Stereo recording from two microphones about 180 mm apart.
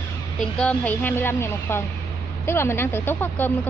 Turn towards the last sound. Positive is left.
turn(degrees=10)  # may be behind; listen again after turning